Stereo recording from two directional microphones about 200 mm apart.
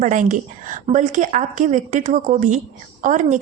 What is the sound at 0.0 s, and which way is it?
A woman's voice, 40° right (ahead or behind).